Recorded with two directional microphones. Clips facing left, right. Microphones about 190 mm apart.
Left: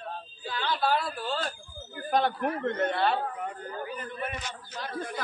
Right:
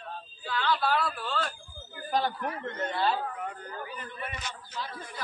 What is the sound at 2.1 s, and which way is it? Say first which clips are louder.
Speech: left 3 dB; 55° left (ahead or behind).